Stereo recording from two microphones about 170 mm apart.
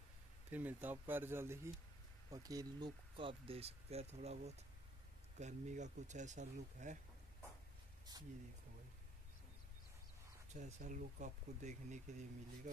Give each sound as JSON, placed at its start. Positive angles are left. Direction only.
{"t": 0.5, "sound": "speech", "side_deg": -10}
{"t": 8.1, "sound": "speech", "side_deg": -25}
{"t": 10.5, "sound": "speech", "side_deg": -45}